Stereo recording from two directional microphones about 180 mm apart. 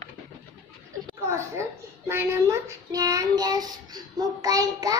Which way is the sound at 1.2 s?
15° right (ahead or behind).